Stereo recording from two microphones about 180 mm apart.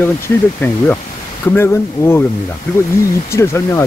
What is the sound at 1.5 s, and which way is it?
Speech, 15° left (ahead or behind).